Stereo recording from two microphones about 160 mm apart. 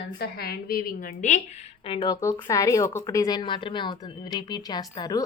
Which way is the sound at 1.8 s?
30° left (ahead or behind).